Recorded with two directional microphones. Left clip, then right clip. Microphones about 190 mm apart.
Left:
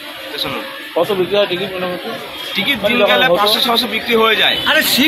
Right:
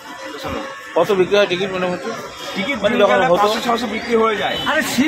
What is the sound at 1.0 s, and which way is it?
Speech, 10° right (ahead or behind).